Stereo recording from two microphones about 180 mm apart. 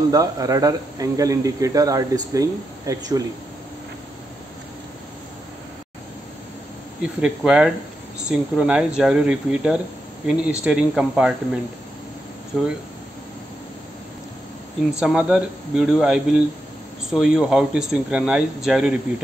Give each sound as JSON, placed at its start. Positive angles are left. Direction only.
{"t": 0.1, "sound": "speech", "side_deg": -20}
{"t": 7.0, "sound": "speech", "side_deg": -5}
{"t": 15.0, "sound": "speech", "side_deg": -5}